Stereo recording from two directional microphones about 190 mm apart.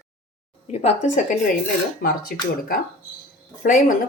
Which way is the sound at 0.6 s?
35° left (ahead or behind).